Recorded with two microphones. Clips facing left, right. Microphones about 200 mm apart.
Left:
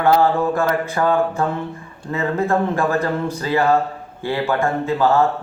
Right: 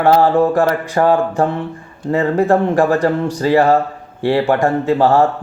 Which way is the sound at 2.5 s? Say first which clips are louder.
Right 5 dB; 35° right (ahead or behind).